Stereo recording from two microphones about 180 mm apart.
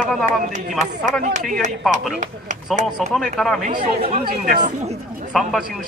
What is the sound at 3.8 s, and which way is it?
Speech, 35° right (ahead or behind).